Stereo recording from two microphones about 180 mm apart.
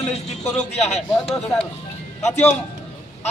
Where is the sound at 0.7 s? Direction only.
35° left (ahead or behind).